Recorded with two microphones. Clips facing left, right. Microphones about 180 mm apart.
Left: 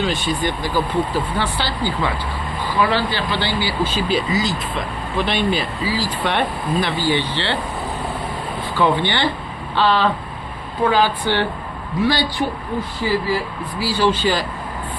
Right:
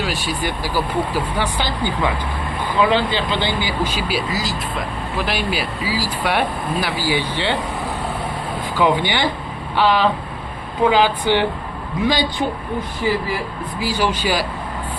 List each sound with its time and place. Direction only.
0.0 s speech: 10° right (ahead or behind)
8.7 s speech: 15° right (ahead or behind)
13.7 s speech: 15° right (ahead or behind)